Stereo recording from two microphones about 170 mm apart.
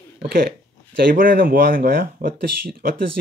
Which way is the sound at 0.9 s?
60° right (ahead or behind).